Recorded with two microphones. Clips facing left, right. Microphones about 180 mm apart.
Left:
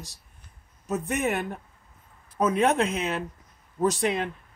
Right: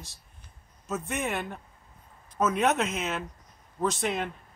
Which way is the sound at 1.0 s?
Centre (ahead or behind).